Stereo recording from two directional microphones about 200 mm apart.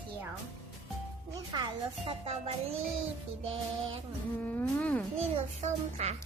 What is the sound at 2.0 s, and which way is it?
Speech, 30° right (ahead or behind).